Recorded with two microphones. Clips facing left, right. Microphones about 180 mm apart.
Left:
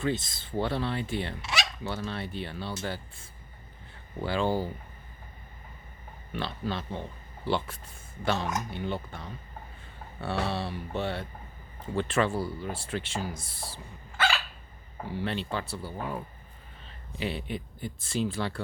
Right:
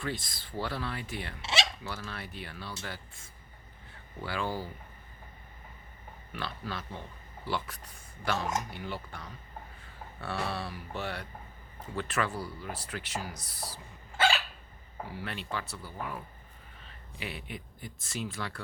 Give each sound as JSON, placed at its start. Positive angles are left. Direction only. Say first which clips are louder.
{"t": 0.0, "sound": "speech", "louder": "left 7 dB", "side_deg": 25}
{"t": 1.4, "sound": "speech", "louder": "right 1 dB", "side_deg": -25}
{"t": 1.8, "sound": "speech", "louder": "left 6 dB", "side_deg": 25}
{"t": 6.3, "sound": "speech", "louder": "left 5 dB", "side_deg": 25}
{"t": 10.4, "sound": "speech", "louder": "left 4 dB", "side_deg": 25}
{"t": 15.0, "sound": "speech", "louder": "left 7 dB", "side_deg": 30}